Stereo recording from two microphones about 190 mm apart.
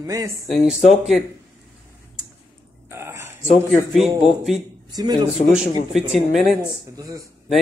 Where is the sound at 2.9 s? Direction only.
15° right (ahead or behind).